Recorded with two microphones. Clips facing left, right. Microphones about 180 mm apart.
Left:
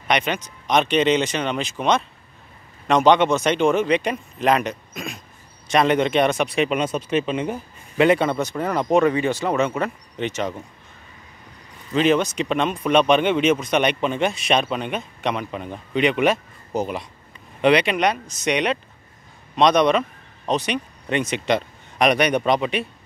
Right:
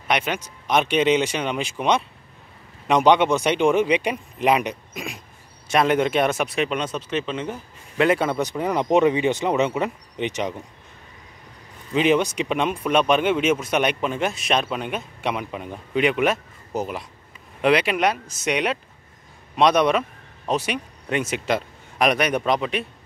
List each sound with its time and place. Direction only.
0.1 s speech: 5° right (ahead or behind); by 7.5 s 10° left (ahead or behind)
8.0 s speech: 5° right (ahead or behind)
11.9 s speech: 15° right (ahead or behind)